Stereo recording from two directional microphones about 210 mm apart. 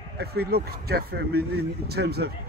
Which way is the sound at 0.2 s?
50° right (ahead or behind).